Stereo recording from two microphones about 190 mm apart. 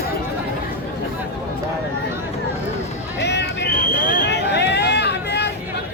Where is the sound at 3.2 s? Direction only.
65° left (ahead or behind).